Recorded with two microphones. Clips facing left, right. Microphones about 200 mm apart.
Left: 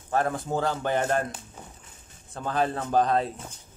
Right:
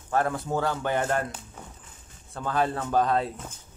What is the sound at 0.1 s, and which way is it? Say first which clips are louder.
A man's voice: even; 40° left (ahead or behind).